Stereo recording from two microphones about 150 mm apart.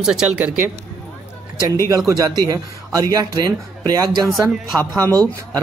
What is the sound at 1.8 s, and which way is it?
Speech, 20° right (ahead or behind).